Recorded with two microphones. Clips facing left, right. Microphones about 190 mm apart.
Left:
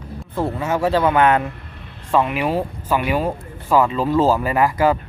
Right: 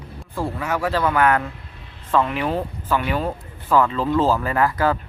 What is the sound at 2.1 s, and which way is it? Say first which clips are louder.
Speech: left 2 dB; 15° left (ahead or behind).